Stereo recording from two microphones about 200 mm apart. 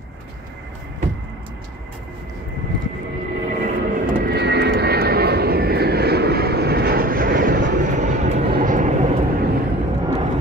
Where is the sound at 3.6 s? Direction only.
45° right (ahead or behind).